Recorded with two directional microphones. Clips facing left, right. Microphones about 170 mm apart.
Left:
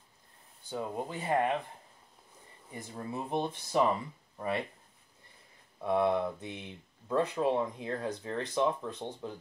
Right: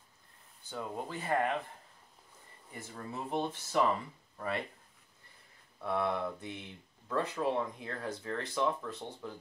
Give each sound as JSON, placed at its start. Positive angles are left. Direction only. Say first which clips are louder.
{"t": 0.7, "sound": "speech", "louder": "left 3 dB", "side_deg": 20}
{"t": 2.7, "sound": "speech", "louder": "left 4 dB", "side_deg": 20}
{"t": 5.8, "sound": "speech", "louder": "left 5 dB", "side_deg": 20}